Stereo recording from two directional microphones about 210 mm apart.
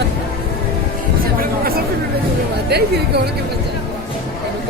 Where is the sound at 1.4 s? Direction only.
45° right (ahead or behind).